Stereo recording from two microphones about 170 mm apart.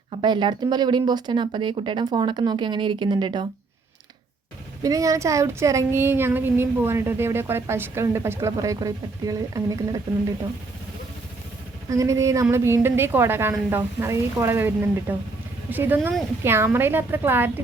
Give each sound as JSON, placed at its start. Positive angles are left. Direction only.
{"t": 0.1, "sound": "speech", "side_deg": -30}
{"t": 4.8, "sound": "speech", "side_deg": -20}
{"t": 11.9, "sound": "speech", "side_deg": -20}